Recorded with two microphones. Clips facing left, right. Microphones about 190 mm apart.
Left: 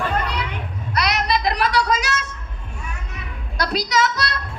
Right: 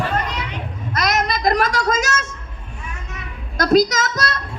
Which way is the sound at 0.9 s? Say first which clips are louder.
Right 1 dB; 45° right (ahead or behind).